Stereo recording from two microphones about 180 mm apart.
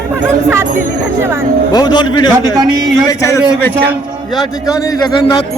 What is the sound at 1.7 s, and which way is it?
Speech, 25° left (ahead or behind).